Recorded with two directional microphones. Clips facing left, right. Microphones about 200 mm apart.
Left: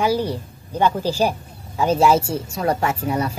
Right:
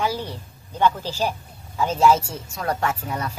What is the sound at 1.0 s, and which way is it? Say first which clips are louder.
Speech: left 6 dB; 10° left (ahead or behind).